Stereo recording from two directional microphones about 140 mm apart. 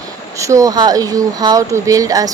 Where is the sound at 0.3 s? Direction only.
20° right (ahead or behind).